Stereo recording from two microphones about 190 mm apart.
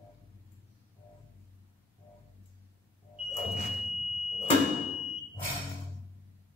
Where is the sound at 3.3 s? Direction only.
35° left (ahead or behind).